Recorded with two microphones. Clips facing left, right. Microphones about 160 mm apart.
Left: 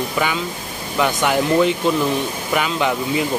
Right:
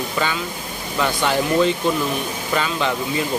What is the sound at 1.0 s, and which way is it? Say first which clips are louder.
Speech: left 2 dB; 15° left (ahead or behind).